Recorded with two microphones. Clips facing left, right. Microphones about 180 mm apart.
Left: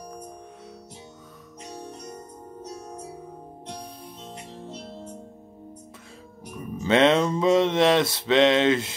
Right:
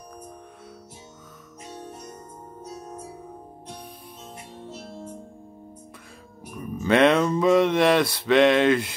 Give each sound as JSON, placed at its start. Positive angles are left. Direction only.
{"t": 6.8, "sound": "mantra", "side_deg": 25}